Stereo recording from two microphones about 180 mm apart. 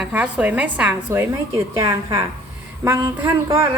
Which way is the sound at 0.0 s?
5° right (ahead or behind).